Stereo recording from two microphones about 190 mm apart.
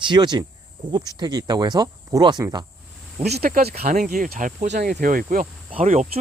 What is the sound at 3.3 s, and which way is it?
Speech, 50° right (ahead or behind).